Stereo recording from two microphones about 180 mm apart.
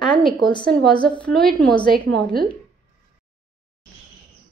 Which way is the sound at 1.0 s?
5° left (ahead or behind).